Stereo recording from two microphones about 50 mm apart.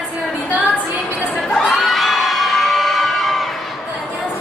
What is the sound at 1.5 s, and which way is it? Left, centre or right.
Crowd, centre.